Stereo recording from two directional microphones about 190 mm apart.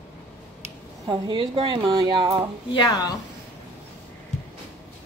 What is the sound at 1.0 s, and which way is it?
A woman's voice, 25° right (ahead or behind).